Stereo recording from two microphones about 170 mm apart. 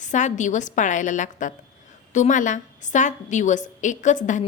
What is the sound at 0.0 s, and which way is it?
A woman's voice, 45° left (ahead or behind).